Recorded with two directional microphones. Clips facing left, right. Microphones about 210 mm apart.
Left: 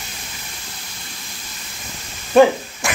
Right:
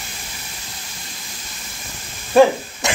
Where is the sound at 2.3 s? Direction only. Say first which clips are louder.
Even; centre (ahead or behind).